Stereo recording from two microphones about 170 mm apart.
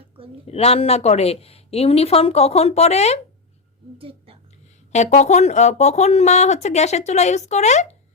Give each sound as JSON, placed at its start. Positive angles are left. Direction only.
{"t": 0.4, "sound": "speech", "side_deg": 35}
{"t": 3.9, "sound": "a sound", "side_deg": -35}
{"t": 4.9, "sound": "speech", "side_deg": 45}